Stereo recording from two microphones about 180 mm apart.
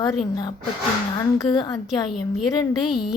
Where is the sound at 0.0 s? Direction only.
20° left (ahead or behind).